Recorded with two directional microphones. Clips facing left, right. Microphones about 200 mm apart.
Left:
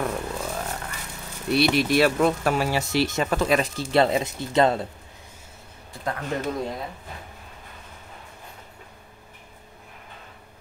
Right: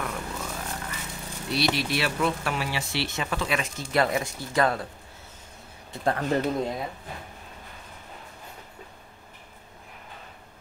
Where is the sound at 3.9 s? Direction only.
25° left (ahead or behind).